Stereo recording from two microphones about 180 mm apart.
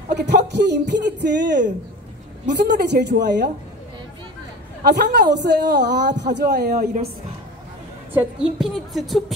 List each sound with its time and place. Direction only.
0.1 s speech: 70° right (ahead or behind)
4.8 s speech: 65° right (ahead or behind)
6.4 s speech: 50° right (ahead or behind)
8.1 s a woman's voice: 5° right (ahead or behind)